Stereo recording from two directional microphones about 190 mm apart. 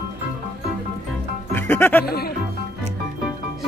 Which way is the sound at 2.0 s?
55° left (ahead or behind).